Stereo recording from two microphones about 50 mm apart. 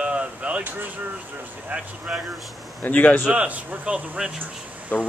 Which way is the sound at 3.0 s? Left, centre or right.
Left.